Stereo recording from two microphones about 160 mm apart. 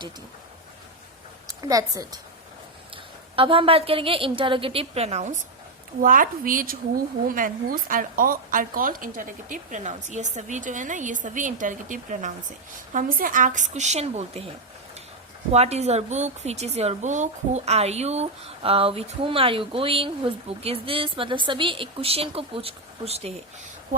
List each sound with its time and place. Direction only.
1.5 s a woman's voice: 20° right (ahead or behind)
2.9 s a woman's voice: 35° right (ahead or behind)
6.0 s a woman's voice: 60° right (ahead or behind); by 14.5 s 40° right (ahead or behind)
15.5 s a woman's voice: 40° right (ahead or behind)